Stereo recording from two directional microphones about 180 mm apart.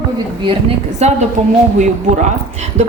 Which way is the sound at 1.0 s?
35° right (ahead or behind).